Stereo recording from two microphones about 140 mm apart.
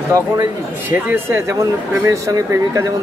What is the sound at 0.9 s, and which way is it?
Speech, 15° right (ahead or behind).